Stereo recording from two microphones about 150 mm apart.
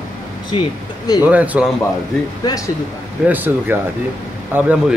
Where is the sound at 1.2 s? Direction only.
10° right (ahead or behind).